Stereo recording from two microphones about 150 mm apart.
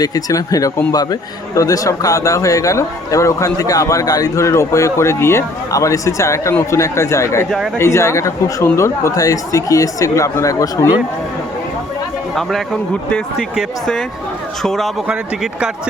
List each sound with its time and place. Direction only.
0.0 s a man's voice: 25° left (ahead or behind)
12.3 s a man's voice: centre (ahead or behind)